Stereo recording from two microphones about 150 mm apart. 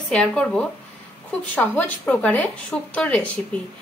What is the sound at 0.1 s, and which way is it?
Speech, 5° left (ahead or behind).